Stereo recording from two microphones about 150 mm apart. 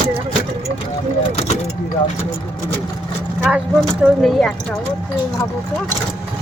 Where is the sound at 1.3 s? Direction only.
45° left (ahead or behind).